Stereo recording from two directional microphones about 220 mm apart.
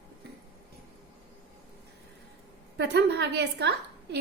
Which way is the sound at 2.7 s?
50° right (ahead or behind).